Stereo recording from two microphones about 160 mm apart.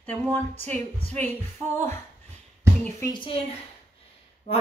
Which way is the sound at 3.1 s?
35° left (ahead or behind).